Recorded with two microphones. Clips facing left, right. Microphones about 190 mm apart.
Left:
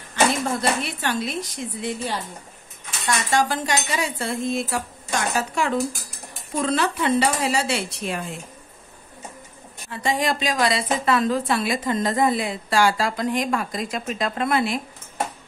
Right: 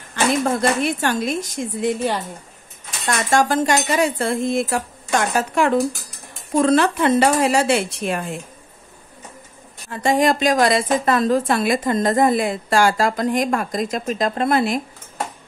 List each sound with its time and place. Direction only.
0.1 s a woman's voice: 50° right (ahead or behind)
9.8 s a woman's voice: 45° right (ahead or behind)